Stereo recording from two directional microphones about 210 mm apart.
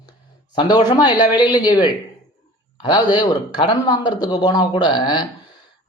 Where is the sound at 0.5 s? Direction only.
20° left (ahead or behind).